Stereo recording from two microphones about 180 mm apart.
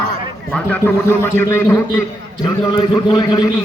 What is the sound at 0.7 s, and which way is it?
A man's voice, 10° left (ahead or behind).